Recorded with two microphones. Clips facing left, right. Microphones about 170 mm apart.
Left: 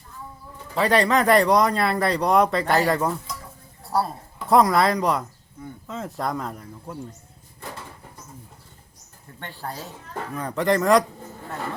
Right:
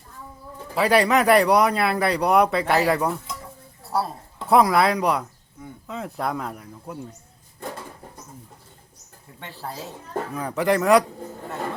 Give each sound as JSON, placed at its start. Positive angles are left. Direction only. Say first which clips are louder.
{"t": 0.8, "sound": "speech", "louder": "right 1 dB", "side_deg": -5}
{"t": 9.4, "sound": "speech", "louder": "even", "side_deg": 0}